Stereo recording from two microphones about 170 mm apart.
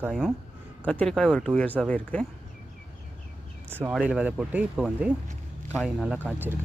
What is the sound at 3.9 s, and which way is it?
Speech, 5° right (ahead or behind).